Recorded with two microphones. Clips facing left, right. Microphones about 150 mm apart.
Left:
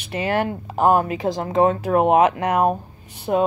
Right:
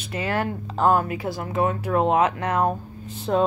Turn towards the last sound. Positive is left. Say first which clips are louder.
# left 2 dB
turn(degrees=20)  # may be behind; listen again after turning